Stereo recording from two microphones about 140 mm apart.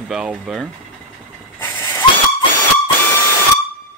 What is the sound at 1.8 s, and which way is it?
Hiss, 15° left (ahead or behind).